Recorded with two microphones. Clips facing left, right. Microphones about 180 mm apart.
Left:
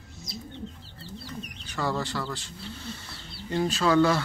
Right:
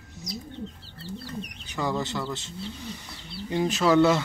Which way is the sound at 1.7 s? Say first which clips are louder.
Right 1 dB; 20° right (ahead or behind).